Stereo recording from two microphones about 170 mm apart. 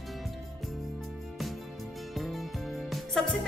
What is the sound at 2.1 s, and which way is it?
Music, centre (ahead or behind).